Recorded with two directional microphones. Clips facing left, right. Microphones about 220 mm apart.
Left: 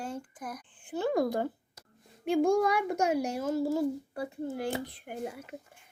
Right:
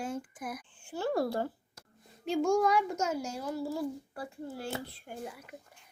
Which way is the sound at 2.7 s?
60° left (ahead or behind).